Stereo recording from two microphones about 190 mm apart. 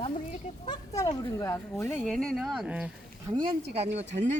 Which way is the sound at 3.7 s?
35° right (ahead or behind).